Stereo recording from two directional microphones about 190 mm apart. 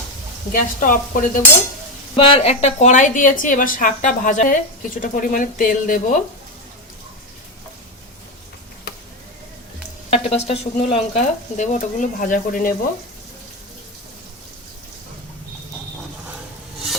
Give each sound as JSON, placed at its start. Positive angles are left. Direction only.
{"t": 0.5, "sound": "a woman's voice", "side_deg": 45}
{"t": 2.1, "sound": "a woman's voice", "side_deg": 30}
{"t": 10.1, "sound": "speech", "side_deg": 35}